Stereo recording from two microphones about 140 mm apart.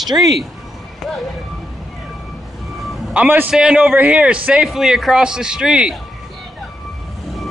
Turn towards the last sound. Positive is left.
turn(degrees=-5)  # may be behind; listen again after turning